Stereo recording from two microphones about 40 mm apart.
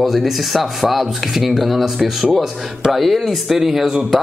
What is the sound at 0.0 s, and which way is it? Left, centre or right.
A man's voice, centre.